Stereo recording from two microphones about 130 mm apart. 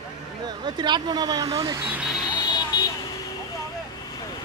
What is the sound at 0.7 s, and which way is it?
Speech, 35° right (ahead or behind).